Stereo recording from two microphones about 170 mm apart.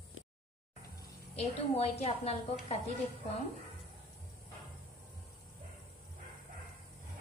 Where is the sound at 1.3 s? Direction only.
35° left (ahead or behind).